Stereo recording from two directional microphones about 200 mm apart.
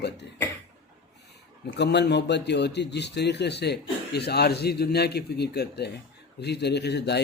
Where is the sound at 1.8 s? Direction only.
55° left (ahead or behind).